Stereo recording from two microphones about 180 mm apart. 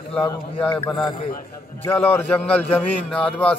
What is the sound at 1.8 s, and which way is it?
A man's voice, 10° left (ahead or behind).